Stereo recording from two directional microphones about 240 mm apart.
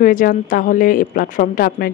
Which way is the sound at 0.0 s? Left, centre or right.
Left.